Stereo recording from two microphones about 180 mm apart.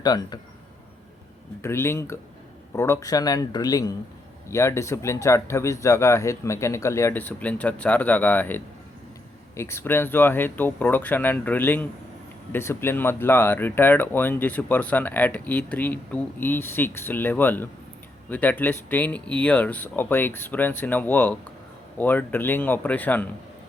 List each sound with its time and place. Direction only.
0.0 s speech: 20° left (ahead or behind)
1.6 s speech: 15° left (ahead or behind)